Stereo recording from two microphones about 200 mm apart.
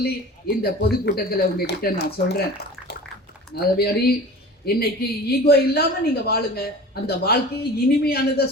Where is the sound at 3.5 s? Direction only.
50° left (ahead or behind).